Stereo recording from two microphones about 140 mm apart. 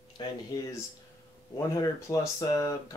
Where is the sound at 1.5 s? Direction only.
20° left (ahead or behind).